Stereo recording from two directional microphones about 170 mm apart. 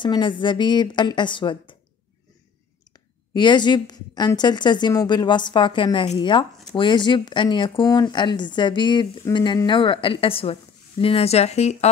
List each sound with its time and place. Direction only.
0.0 s speech: 30° left (ahead or behind)
3.3 s speech: 25° left (ahead or behind)